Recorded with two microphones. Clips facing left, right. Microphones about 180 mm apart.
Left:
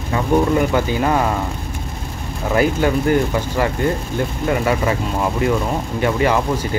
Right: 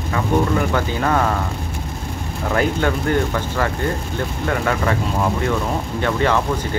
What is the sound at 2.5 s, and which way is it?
Speech, 10° left (ahead or behind).